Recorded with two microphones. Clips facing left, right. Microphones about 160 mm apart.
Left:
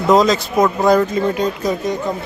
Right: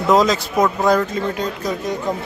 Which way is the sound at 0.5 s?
10° left (ahead or behind).